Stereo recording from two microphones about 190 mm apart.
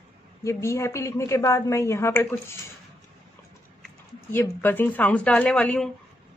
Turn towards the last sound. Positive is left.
turn(degrees=5)  # may be behind; listen again after turning